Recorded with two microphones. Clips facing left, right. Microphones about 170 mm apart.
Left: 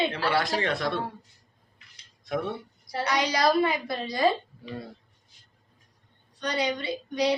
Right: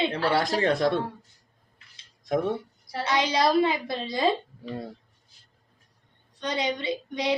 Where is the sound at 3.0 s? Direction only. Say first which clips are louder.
Right 1 dB; 25° right (ahead or behind).